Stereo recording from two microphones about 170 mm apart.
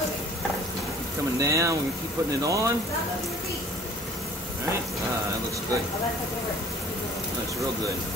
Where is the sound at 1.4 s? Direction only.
20° right (ahead or behind).